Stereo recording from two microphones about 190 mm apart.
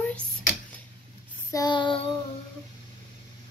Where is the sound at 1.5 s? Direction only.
20° left (ahead or behind).